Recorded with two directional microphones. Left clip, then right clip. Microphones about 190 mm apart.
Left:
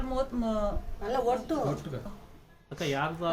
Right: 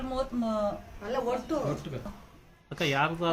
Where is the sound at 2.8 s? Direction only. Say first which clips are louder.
Right 3 dB; 40° right (ahead or behind).